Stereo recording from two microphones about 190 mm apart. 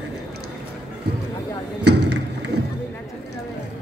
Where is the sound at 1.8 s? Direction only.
65° right (ahead or behind).